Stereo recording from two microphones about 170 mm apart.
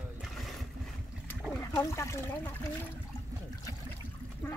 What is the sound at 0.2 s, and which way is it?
Boat, centre (ahead or behind).